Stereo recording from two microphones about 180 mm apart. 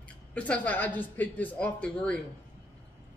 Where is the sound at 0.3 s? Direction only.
5° left (ahead or behind).